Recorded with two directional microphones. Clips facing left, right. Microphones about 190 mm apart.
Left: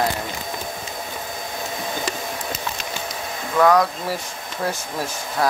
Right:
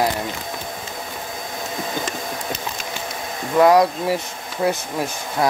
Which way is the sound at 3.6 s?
25° right (ahead or behind).